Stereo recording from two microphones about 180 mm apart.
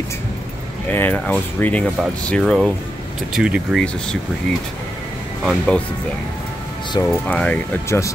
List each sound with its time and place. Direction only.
0.9 s speech: 10° left (ahead or behind)
5.4 s speech: centre (ahead or behind)
7.1 s speech: 5° left (ahead or behind)